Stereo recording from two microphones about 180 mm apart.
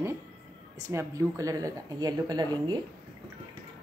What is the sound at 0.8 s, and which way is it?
Speech, 15° right (ahead or behind).